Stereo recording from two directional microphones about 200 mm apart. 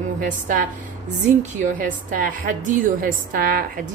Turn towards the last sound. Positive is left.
turn(degrees=-45)  # may be behind; listen again after turning